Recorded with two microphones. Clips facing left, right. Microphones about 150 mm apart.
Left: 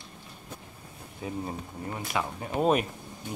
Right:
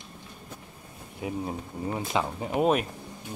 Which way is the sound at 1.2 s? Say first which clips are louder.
Right 2 dB; 10° right (ahead or behind).